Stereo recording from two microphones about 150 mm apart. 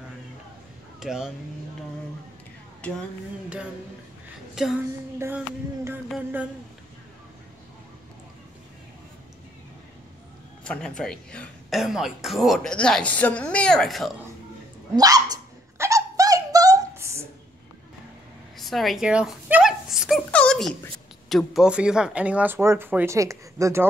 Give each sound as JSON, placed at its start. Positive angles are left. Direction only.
{"t": 0.9, "sound": "speech", "side_deg": -5}
{"t": 4.6, "sound": "speech", "side_deg": -5}
{"t": 6.1, "sound": "speech", "side_deg": -10}
{"t": 10.6, "sound": "speech", "side_deg": 5}
{"t": 15.0, "sound": "dog", "side_deg": -25}
{"t": 18.6, "sound": "a sound", "side_deg": 0}
{"t": 21.3, "sound": "speech", "side_deg": 0}